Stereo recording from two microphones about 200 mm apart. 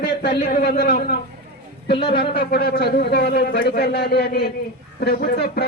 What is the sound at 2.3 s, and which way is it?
Speech, 50° left (ahead or behind).